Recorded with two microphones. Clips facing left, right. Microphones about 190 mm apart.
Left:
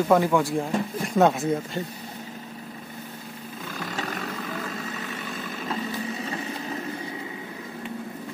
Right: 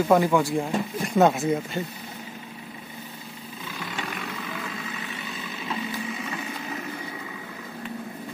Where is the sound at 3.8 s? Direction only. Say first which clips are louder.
Left 2 dB; 40° left (ahead or behind).